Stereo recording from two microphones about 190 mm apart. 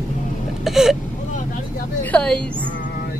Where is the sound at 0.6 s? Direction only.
Centre (ahead or behind).